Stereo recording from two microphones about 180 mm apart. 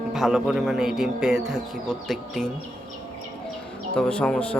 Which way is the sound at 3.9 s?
5° left (ahead or behind).